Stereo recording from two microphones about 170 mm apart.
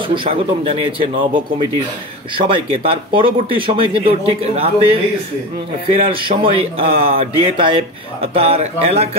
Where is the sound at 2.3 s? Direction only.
35° right (ahead or behind).